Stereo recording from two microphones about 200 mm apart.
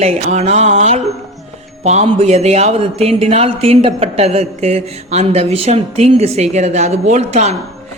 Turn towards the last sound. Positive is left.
turn(degrees=-35)  # may be behind; listen again after turning